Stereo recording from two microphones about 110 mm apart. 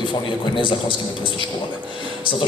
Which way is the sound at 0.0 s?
45° left (ahead or behind).